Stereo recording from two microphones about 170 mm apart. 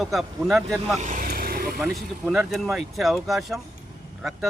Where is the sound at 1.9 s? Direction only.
Centre (ahead or behind).